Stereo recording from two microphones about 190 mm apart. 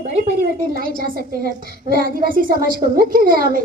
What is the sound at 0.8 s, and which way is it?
A woman's voice, 50° right (ahead or behind).